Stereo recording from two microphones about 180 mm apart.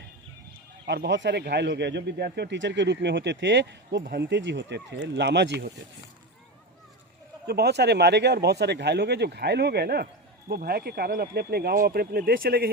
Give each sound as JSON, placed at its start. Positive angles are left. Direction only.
{"t": 0.9, "sound": "speech", "side_deg": -70}
{"t": 7.4, "sound": "speech", "side_deg": -60}